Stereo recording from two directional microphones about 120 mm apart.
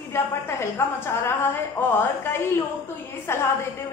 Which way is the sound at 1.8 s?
25° left (ahead or behind).